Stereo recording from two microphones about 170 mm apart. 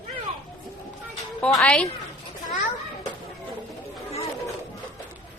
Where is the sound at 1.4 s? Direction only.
5° left (ahead or behind).